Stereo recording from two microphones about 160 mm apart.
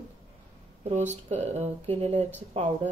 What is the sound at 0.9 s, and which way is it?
Speech, 45° right (ahead or behind).